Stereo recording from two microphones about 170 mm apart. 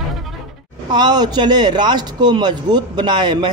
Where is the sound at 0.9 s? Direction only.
25° right (ahead or behind).